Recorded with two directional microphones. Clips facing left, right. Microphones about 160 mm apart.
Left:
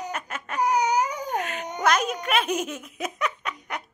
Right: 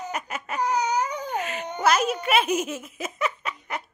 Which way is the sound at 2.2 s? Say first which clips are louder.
Right 2 dB; 5° right (ahead or behind).